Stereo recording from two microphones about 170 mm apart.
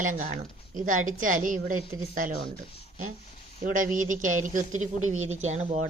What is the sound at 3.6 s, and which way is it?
A man's voice, 50° right (ahead or behind).